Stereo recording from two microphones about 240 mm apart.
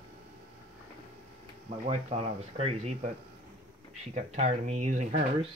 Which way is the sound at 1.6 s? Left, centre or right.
Right.